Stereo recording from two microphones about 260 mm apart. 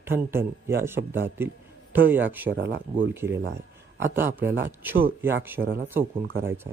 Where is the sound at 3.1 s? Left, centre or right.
Centre.